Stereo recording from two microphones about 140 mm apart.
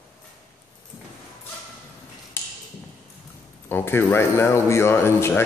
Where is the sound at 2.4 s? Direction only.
15° left (ahead or behind).